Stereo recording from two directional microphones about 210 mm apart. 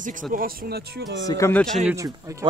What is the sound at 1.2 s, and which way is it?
Speech, 15° left (ahead or behind).